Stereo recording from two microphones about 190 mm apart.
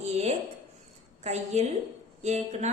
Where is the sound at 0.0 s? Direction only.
35° right (ahead or behind).